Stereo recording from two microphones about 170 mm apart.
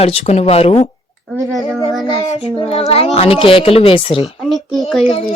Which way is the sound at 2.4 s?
35° left (ahead or behind).